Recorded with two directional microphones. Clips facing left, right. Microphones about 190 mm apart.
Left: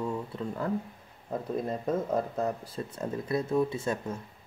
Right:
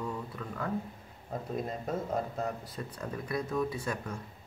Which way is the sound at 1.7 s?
50° left (ahead or behind).